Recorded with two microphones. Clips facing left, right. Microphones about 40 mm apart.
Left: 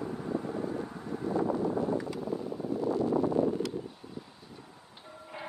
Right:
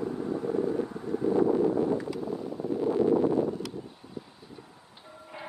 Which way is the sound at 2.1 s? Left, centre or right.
Centre.